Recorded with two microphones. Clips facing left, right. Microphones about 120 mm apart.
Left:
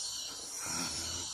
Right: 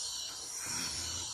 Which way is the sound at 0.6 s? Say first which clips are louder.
Left 4 dB; 40° left (ahead or behind).